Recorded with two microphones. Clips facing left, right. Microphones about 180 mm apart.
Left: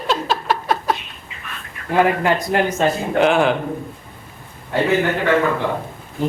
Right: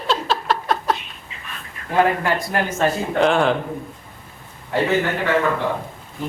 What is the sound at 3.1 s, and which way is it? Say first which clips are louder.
Speech: left 2 dB; 5° left (ahead or behind).